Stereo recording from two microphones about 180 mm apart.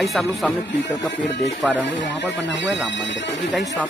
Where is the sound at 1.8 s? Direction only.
75° left (ahead or behind).